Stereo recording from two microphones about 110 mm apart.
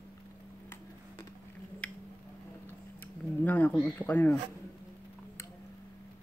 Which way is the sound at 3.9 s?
15° left (ahead or behind).